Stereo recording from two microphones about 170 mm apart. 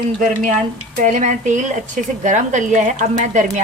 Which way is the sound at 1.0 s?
45° right (ahead or behind).